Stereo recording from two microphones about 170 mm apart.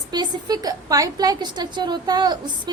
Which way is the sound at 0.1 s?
25° right (ahead or behind).